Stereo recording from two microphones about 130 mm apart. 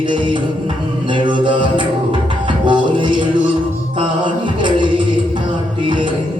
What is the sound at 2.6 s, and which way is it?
Music, 35° right (ahead or behind).